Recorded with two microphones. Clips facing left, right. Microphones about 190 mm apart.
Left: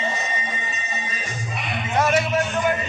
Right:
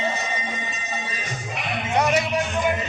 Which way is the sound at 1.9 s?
15° right (ahead or behind).